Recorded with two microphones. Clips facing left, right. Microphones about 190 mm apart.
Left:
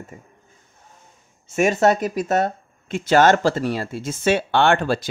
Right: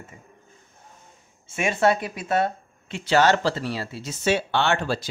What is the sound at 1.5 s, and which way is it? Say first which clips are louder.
Speech: left 4 dB; 45° left (ahead or behind).